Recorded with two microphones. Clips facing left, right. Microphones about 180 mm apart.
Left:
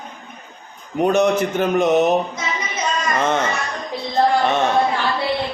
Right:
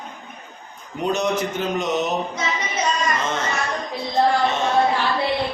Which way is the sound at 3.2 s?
60° left (ahead or behind).